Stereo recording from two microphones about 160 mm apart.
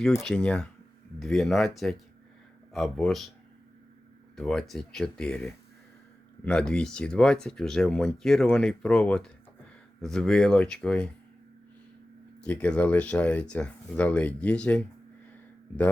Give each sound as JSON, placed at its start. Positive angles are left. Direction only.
{"t": 0.2, "sound": "speech", "side_deg": 5}
{"t": 4.4, "sound": "speech", "side_deg": 0}
{"t": 12.4, "sound": "speech", "side_deg": 10}